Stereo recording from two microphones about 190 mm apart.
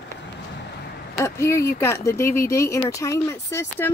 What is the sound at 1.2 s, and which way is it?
Speech, 15° left (ahead or behind).